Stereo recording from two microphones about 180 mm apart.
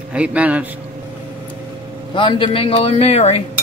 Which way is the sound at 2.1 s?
30° left (ahead or behind).